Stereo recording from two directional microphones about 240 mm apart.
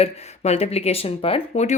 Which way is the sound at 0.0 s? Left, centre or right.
Left.